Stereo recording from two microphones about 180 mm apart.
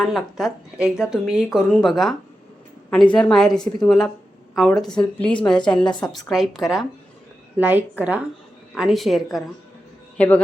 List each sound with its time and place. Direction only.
0.0 s a woman's voice: centre (ahead or behind)
5.8 s a woman's voice: 25° left (ahead or behind)
6.1 s a woman's voice: centre (ahead or behind)